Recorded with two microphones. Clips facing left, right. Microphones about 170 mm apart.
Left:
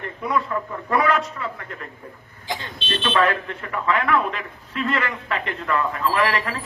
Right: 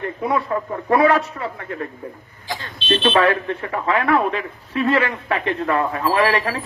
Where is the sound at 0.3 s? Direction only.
35° right (ahead or behind).